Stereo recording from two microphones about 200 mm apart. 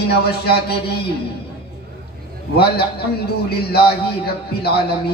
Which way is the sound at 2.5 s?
50° left (ahead or behind).